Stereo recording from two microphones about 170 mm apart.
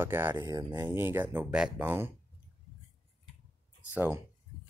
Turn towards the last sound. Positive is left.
turn(degrees=-10)  # may be behind; listen again after turning